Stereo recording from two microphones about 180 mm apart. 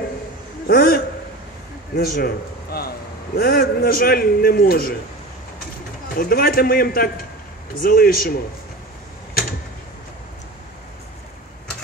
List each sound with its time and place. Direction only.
0.7 s a man's voice: 55° left (ahead or behind)
6.1 s a man's voice: 55° left (ahead or behind)